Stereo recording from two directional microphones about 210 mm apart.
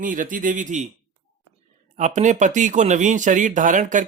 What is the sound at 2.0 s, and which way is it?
Speech, 35° right (ahead or behind).